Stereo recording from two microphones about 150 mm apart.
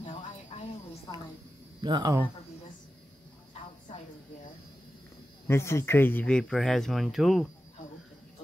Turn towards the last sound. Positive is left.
turn(degrees=0)  # may be behind; listen again after turning